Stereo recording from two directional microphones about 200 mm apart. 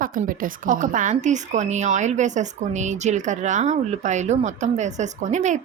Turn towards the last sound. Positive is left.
turn(degrees=-35)  # may be behind; listen again after turning